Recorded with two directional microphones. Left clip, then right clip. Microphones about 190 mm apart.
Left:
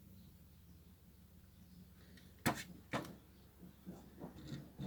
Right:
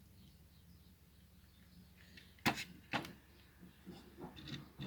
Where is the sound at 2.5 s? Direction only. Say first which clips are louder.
Right 2 dB; 15° left (ahead or behind).